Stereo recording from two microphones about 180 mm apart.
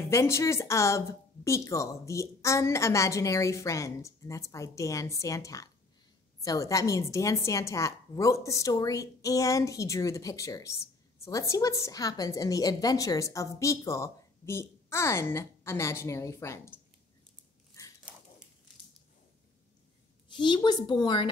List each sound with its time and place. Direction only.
0.1 s a woman's voice: 15° left (ahead or behind)
17.8 s a sound: 15° left (ahead or behind)
20.3 s a woman's voice: 25° left (ahead or behind)